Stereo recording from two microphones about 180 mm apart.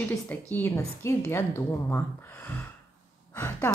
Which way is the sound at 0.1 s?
10° left (ahead or behind).